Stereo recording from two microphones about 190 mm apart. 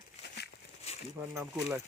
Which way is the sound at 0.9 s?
35° left (ahead or behind).